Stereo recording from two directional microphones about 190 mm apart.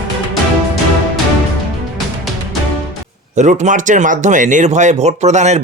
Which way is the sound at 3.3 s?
40° right (ahead or behind).